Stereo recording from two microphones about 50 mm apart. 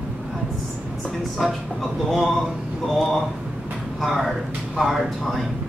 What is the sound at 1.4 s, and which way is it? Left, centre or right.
Speech, centre.